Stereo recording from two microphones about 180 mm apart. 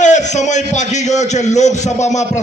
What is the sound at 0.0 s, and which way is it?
A man's voice, 40° left (ahead or behind).